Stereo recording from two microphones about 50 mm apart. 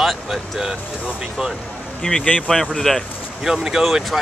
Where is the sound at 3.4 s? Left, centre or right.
Centre.